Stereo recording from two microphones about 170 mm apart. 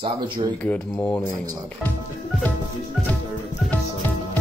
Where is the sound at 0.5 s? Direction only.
10° left (ahead or behind).